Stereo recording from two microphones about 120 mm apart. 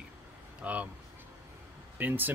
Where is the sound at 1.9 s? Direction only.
15° right (ahead or behind).